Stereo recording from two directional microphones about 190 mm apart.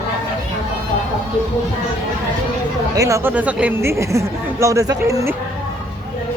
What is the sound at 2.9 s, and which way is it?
Speech, 15° right (ahead or behind).